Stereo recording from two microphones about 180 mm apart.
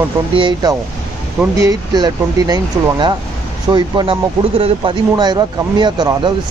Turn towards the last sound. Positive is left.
turn(degrees=-25)  # may be behind; listen again after turning